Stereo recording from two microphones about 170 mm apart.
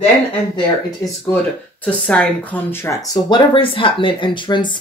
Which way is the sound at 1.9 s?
5° left (ahead or behind).